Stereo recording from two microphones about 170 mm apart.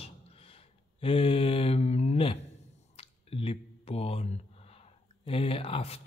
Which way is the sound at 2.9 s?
35° left (ahead or behind).